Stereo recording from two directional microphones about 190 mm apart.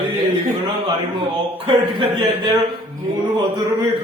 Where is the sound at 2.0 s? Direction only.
25° right (ahead or behind).